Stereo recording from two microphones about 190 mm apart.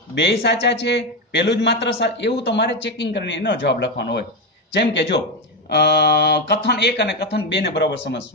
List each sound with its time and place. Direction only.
0.2 s a man's voice: 65° left (ahead or behind)